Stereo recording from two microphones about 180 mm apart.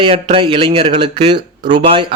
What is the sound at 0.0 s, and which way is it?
A man's voice, 30° right (ahead or behind).